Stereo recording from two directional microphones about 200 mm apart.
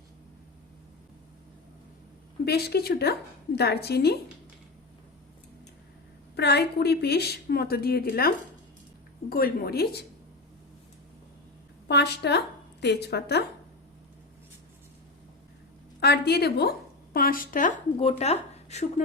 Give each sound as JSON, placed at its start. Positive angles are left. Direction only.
{"t": 2.4, "sound": "a woman's voice", "side_deg": 55}
{"t": 6.3, "sound": "a woman's voice", "side_deg": 55}
{"t": 9.3, "sound": "a woman's voice", "side_deg": 45}
{"t": 11.9, "sound": "a woman's voice", "side_deg": 55}
{"t": 16.0, "sound": "a woman's voice", "side_deg": 55}
{"t": 17.9, "sound": "speech", "side_deg": 30}